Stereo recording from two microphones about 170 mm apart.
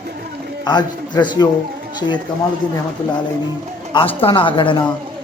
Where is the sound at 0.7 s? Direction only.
25° left (ahead or behind).